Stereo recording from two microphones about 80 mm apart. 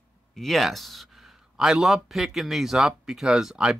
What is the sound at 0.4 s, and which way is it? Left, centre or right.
Speech, centre.